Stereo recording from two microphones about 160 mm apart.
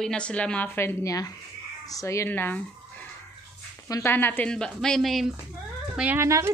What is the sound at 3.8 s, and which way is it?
Speech, 20° left (ahead or behind).